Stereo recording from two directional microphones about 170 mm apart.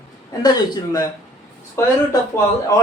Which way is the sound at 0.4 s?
25° left (ahead or behind).